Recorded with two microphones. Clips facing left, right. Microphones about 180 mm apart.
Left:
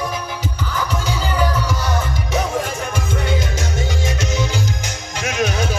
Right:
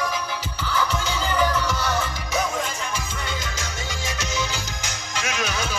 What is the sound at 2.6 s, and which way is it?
Music, 50° left (ahead or behind).